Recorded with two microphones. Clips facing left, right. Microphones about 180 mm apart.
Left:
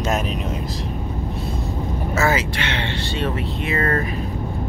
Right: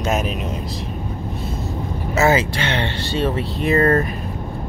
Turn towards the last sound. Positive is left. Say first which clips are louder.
# right 6 dB
turn(degrees=-40)  # may be behind; listen again after turning